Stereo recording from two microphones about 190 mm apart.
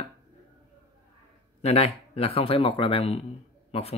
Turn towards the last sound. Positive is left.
turn(degrees=30)  # may be behind; listen again after turning